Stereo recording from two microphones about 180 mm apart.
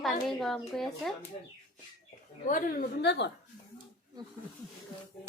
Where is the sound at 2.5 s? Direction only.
55° left (ahead or behind); by 3.3 s 70° left (ahead or behind).